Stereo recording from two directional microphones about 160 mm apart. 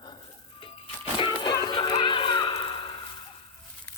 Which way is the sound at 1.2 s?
30° left (ahead or behind).